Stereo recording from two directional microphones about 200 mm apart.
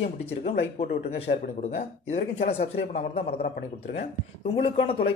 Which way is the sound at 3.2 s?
50° left (ahead or behind).